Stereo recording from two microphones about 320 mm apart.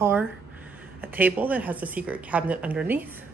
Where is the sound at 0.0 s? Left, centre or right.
Centre.